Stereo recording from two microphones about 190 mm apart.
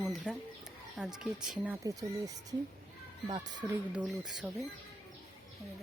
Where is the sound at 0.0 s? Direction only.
Centre (ahead or behind).